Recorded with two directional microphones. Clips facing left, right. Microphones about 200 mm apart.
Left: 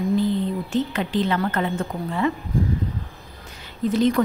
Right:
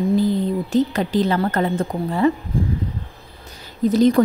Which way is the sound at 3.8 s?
40° right (ahead or behind).